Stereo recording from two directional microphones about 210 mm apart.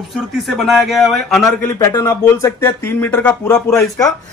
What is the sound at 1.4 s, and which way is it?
Speech, 15° left (ahead or behind).